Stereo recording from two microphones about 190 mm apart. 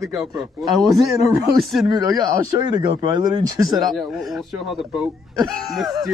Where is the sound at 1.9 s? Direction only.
20° right (ahead or behind).